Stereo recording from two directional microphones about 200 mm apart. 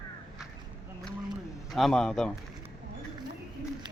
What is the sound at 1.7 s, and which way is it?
Speech, centre (ahead or behind).